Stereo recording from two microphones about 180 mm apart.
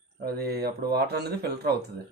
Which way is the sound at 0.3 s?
60° right (ahead or behind).